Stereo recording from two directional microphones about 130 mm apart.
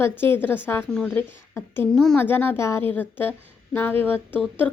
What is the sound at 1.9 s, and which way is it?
Speech, 5° left (ahead or behind).